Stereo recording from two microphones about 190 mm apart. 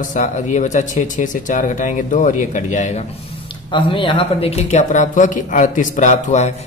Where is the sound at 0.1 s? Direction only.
40° left (ahead or behind).